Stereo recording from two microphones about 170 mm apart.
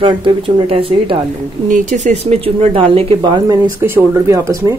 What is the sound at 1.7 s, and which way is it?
Speech, 45° right (ahead or behind).